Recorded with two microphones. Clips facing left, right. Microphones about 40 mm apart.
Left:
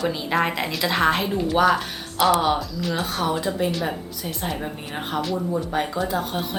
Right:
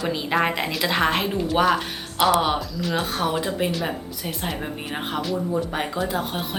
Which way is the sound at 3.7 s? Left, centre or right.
Centre.